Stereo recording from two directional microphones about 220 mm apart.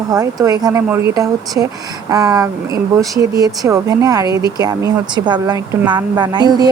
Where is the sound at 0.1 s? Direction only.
15° right (ahead or behind).